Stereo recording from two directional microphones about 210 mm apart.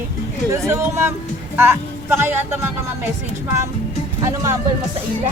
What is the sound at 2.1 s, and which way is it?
Speech, 10° right (ahead or behind).